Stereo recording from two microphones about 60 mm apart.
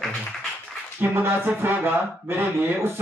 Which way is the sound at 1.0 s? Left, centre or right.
Right.